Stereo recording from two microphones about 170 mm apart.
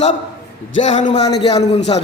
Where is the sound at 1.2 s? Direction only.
25° left (ahead or behind).